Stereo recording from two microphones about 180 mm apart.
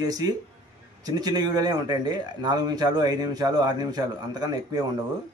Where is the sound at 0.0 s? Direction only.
20° right (ahead or behind).